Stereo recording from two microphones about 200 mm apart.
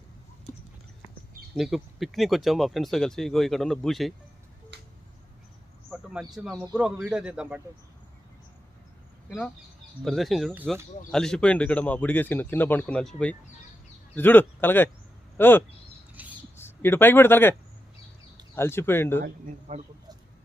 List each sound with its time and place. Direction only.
1.5 s speech: centre (ahead or behind)
4.7 s a sound: 55° right (ahead or behind)
5.9 s speech: 5° right (ahead or behind)
10.0 s speech: centre (ahead or behind)
16.2 s a sound: 10° right (ahead or behind)
16.6 s speech: 10° left (ahead or behind)
18.5 s speech: 10° left (ahead or behind)
19.7 s speech: 35° right (ahead or behind)